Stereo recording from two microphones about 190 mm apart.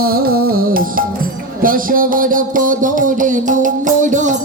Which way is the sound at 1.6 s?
45° right (ahead or behind).